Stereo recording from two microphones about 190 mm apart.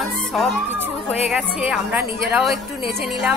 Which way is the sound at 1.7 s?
10° right (ahead or behind).